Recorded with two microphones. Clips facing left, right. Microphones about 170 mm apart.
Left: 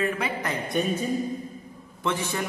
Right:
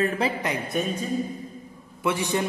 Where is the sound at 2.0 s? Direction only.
15° right (ahead or behind).